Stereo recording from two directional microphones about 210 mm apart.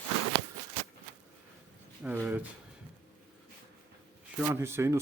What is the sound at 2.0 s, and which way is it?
Speech, 10° right (ahead or behind).